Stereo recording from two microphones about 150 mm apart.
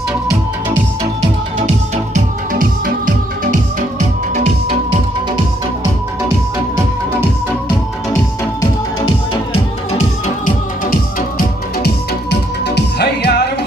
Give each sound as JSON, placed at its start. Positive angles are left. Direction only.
{"t": 2.1, "sound": "music", "side_deg": -65}
{"t": 9.0, "sound": "music", "side_deg": 35}
{"t": 10.9, "sound": "music", "side_deg": 70}